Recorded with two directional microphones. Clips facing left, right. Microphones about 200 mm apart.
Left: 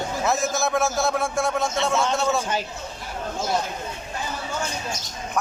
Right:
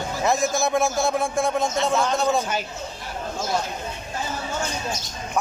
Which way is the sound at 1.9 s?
Centre (ahead or behind).